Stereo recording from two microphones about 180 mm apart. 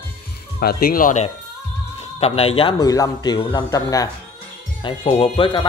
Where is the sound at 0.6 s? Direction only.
60° left (ahead or behind).